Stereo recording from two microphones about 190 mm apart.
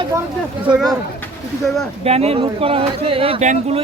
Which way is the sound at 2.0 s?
35° right (ahead or behind).